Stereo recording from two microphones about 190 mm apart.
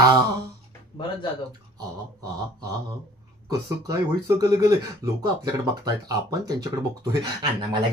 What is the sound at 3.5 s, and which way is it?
Speech, 20° right (ahead or behind).